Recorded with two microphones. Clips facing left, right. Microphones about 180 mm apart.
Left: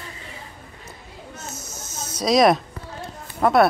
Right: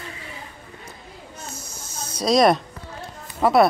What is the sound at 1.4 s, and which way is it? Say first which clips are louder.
Snake: left 1 dB; 20° left (ahead or behind).